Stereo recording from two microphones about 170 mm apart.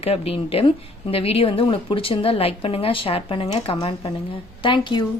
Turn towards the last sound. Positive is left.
turn(degrees=25)  # may be behind; listen again after turning